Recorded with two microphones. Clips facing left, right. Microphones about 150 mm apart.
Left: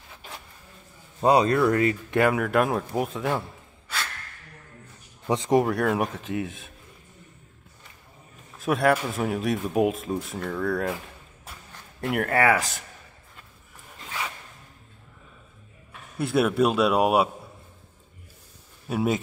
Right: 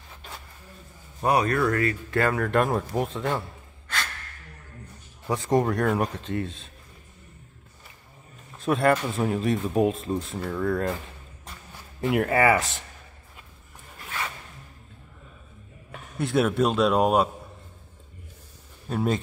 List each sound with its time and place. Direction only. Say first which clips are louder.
1.2 s speech: left 3 dB; 20° left (ahead or behind); by 3.4 s 5° left (ahead or behind)
5.3 s speech: left 2 dB; 20° left (ahead or behind)
5.6 s speech: even; centre (ahead or behind)
8.5 s a man's voice: even; 5° left (ahead or behind)
13.9 s a sound: even; 15° left (ahead or behind)
16.2 s speech: left 1 dB; 5° left (ahead or behind)
18.9 s speech: left 1 dB; 10° left (ahead or behind)